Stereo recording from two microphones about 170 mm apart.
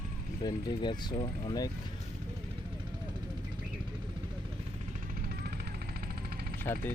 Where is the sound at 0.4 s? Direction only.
25° left (ahead or behind).